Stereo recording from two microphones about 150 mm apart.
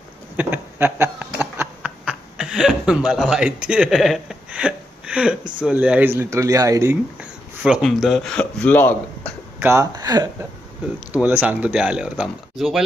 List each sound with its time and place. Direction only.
0.4 s a sound: 15° right (ahead or behind)
5.6 s speech: 5° right (ahead or behind)
7.6 s speech: centre (ahead or behind)
9.6 s speech: 20° right (ahead or behind)
11.1 s speech: 10° right (ahead or behind)